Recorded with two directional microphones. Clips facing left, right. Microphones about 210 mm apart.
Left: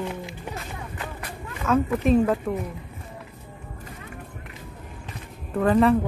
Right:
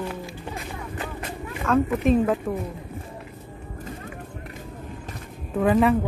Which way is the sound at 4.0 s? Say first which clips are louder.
Right 3 dB; 45° right (ahead or behind).